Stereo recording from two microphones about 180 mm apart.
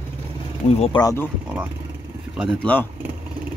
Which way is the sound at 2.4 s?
5° left (ahead or behind).